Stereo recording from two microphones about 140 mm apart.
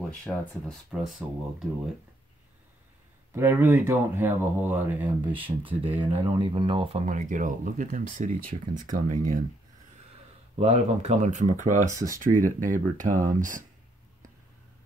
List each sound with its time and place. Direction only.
0.3 s speech: 5° left (ahead or behind)
3.3 s speech: 15° right (ahead or behind)
5.3 s speech: 40° right (ahead or behind)
7.1 s speech: 65° right (ahead or behind)
10.5 s speech: 50° right (ahead or behind); by 13.7 s 65° right (ahead or behind)